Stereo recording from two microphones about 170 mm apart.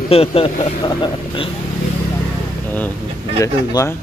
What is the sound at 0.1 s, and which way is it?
Speech, 35° left (ahead or behind).